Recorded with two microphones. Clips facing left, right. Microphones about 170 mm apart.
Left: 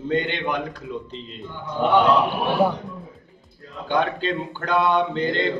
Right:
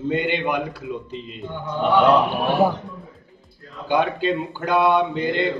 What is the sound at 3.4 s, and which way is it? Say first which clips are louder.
Speech: even; 10° right (ahead or behind).